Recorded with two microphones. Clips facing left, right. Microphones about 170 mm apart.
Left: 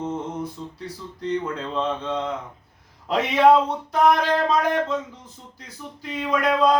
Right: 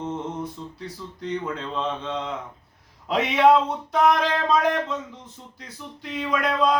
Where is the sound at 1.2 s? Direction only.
Centre (ahead or behind).